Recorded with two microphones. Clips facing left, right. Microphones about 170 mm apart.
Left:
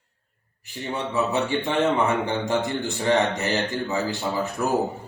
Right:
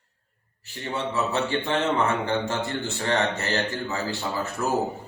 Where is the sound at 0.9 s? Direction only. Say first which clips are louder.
Left 2 dB; 15° left (ahead or behind).